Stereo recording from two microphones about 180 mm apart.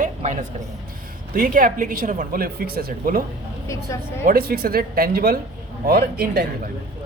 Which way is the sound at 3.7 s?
15° left (ahead or behind).